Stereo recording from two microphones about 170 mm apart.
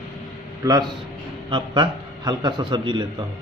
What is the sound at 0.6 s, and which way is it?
A man's voice, 25° right (ahead or behind).